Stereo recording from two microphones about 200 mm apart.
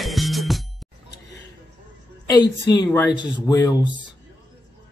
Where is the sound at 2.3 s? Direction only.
20° left (ahead or behind).